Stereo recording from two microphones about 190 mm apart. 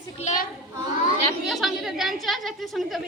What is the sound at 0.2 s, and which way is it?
Speech, 40° left (ahead or behind).